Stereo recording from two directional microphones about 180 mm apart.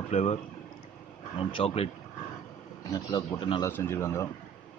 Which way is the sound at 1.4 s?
30° left (ahead or behind).